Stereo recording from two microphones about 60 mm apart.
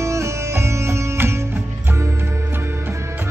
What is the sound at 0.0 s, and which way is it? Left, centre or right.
Music, right.